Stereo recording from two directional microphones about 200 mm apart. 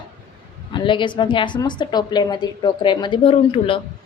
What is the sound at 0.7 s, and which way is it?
A woman's voice, 25° left (ahead or behind).